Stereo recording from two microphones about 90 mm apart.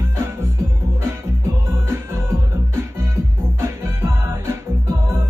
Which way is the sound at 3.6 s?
30° right (ahead or behind).